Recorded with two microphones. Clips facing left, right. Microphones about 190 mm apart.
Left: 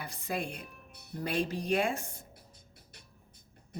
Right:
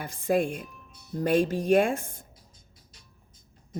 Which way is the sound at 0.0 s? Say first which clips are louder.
Right 11 dB; 50° right (ahead or behind).